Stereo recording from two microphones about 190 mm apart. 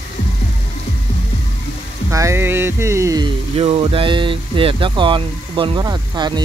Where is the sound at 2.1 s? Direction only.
15° right (ahead or behind).